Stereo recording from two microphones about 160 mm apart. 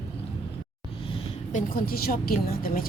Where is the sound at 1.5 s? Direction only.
60° left (ahead or behind).